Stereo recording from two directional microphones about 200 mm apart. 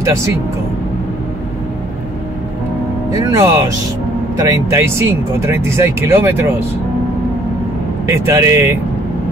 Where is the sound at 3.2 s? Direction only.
15° right (ahead or behind).